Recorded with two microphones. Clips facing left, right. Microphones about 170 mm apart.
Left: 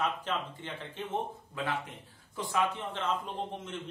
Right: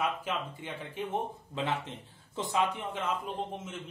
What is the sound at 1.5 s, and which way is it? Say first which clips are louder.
Speech: right 2 dB; 25° right (ahead or behind).